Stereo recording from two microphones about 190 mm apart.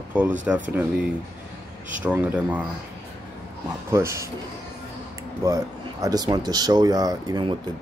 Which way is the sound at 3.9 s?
15° right (ahead or behind).